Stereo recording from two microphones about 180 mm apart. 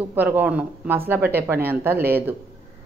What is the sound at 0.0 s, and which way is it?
Speech, 10° right (ahead or behind).